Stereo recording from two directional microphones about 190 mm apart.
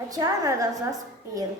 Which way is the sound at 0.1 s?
20° right (ahead or behind).